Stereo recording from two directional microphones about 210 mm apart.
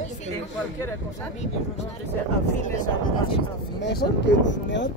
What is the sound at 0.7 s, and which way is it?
Speech, 10° left (ahead or behind).